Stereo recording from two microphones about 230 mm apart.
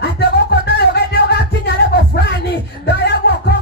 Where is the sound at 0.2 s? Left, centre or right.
Left.